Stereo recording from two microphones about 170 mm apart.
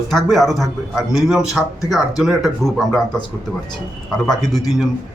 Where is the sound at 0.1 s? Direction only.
Centre (ahead or behind).